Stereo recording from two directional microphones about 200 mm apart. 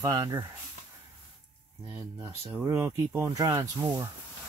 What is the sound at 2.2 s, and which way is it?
Speech, 10° right (ahead or behind).